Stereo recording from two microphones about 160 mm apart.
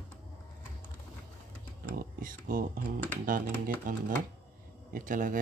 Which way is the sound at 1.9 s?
60° right (ahead or behind).